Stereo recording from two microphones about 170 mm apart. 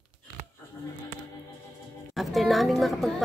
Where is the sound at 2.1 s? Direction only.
Centre (ahead or behind).